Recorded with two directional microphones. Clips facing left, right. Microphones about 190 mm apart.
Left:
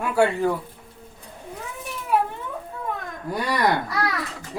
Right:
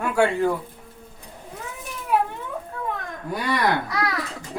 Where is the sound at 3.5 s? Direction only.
Centre (ahead or behind).